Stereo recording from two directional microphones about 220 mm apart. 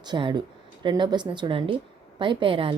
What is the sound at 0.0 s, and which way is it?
A woman's voice, 20° right (ahead or behind).